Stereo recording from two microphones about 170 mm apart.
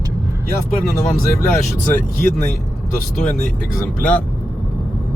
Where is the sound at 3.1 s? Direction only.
45° left (ahead or behind).